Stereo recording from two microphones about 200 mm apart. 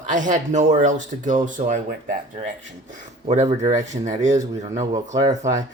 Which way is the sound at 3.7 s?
35° right (ahead or behind).